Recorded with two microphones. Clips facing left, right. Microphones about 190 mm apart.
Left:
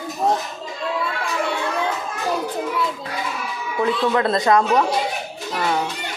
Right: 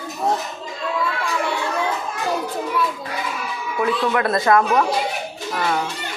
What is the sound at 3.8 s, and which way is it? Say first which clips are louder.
Speech: left 1 dB; 25° left (ahead or behind).